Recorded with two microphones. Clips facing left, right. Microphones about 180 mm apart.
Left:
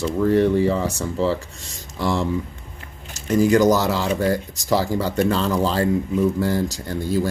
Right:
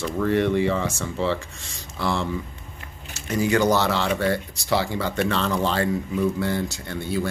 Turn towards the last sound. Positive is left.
turn(degrees=40)  # may be behind; listen again after turning